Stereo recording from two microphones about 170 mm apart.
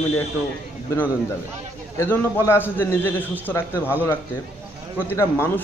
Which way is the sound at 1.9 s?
15° left (ahead or behind).